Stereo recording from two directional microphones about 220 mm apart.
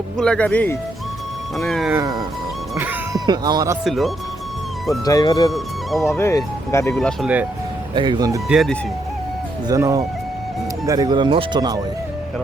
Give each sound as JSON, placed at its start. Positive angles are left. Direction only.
{"t": 0.2, "sound": "speech", "side_deg": 5}
{"t": 2.0, "sound": "speech", "side_deg": -15}
{"t": 3.8, "sound": "speech", "side_deg": 0}
{"t": 5.0, "sound": "speech", "side_deg": 15}
{"t": 5.5, "sound": "speech", "side_deg": 0}
{"t": 6.1, "sound": "speech", "side_deg": 10}
{"t": 6.9, "sound": "speech", "side_deg": 0}
{"t": 7.9, "sound": "speech", "side_deg": -20}
{"t": 8.4, "sound": "speech", "side_deg": 0}
{"t": 9.6, "sound": "speech", "side_deg": -15}